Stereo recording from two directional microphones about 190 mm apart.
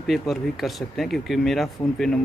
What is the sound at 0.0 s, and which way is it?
Speech, centre (ahead or behind).